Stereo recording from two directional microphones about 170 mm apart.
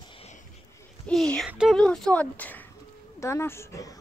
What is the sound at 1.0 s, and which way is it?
A child's voice, 5° left (ahead or behind).